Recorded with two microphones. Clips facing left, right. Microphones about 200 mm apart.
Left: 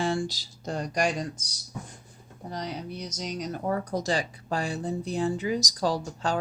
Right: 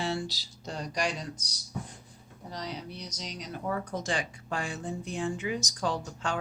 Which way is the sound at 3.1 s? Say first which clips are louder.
Left 7 dB; 45° left (ahead or behind).